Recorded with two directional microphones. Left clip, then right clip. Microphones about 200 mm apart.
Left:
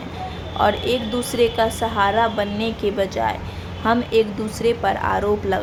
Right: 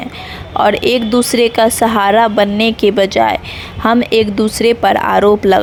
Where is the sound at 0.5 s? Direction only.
40° right (ahead or behind).